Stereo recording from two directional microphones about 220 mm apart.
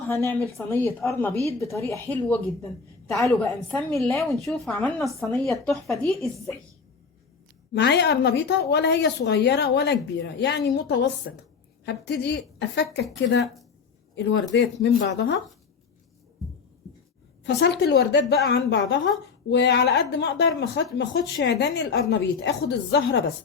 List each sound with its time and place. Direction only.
0.1 s a woman's voice: 10° left (ahead or behind)
3.4 s a woman's voice: 10° left (ahead or behind)
7.7 s speech: 50° left (ahead or behind)
13.4 s a woman's voice: centre (ahead or behind)
14.2 s speech: 50° left (ahead or behind)
17.4 s speech: 50° left (ahead or behind)